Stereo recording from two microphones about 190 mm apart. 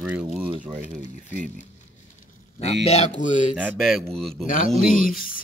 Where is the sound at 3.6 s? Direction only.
5° right (ahead or behind).